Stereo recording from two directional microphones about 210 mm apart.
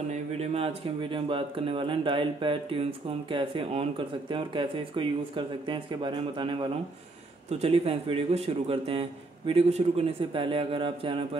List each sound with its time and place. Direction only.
0.1 s speech: 30° right (ahead or behind)